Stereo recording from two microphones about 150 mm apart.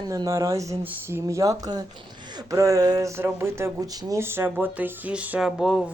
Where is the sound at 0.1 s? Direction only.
20° right (ahead or behind).